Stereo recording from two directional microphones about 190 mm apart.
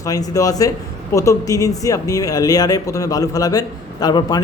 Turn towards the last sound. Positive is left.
turn(degrees=20)  # may be behind; listen again after turning